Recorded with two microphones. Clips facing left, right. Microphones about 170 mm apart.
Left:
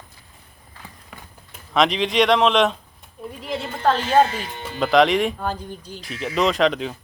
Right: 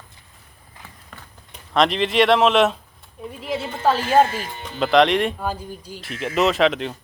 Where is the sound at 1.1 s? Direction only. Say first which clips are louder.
Left 1 dB; centre (ahead or behind).